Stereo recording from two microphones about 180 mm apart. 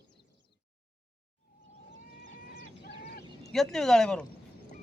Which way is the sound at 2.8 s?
65° left (ahead or behind).